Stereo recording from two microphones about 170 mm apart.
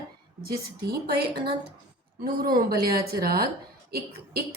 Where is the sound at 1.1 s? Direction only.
70° right (ahead or behind).